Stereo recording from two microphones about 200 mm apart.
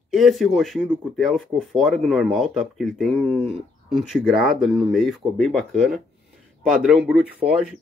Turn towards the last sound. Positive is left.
turn(degrees=-5)  # may be behind; listen again after turning